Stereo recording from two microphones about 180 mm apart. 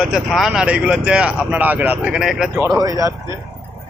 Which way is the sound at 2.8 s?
20° right (ahead or behind).